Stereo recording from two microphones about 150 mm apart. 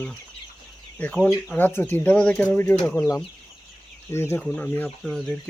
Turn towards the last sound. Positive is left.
turn(degrees=0)  # may be behind; listen again after turning